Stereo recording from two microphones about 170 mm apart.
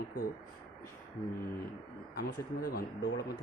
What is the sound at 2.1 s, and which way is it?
Speech, 60° left (ahead or behind).